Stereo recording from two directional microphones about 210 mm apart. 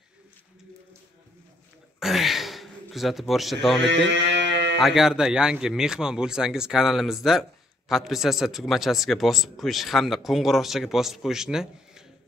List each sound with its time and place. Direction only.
2.0 s a sound: centre (ahead or behind)
3.8 s mantra: 55° right (ahead or behind)
4.7 s a man's voice: centre (ahead or behind)